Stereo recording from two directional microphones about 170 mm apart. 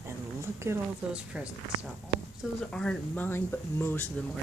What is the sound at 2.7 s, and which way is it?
Speech, 5° left (ahead or behind).